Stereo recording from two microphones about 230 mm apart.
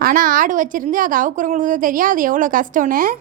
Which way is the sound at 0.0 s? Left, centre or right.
Right.